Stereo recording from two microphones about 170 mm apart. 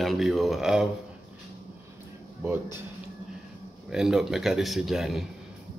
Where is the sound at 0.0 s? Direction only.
Centre (ahead or behind).